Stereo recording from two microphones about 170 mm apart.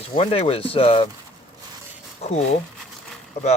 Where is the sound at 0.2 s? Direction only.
35° left (ahead or behind).